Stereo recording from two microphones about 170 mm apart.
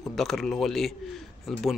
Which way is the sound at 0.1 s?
Centre (ahead or behind).